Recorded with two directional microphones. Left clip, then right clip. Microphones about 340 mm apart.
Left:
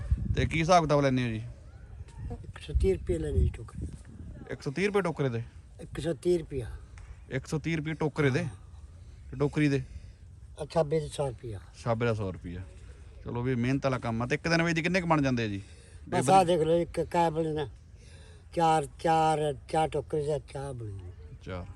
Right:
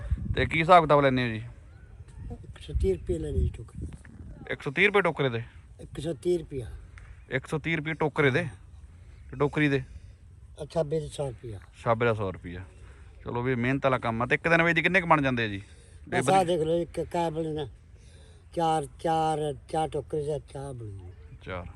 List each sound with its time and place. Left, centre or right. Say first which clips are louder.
0.3 s speech: right 5 dB; centre